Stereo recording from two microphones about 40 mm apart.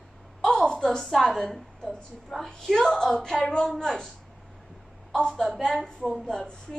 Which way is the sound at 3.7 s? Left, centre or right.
Centre.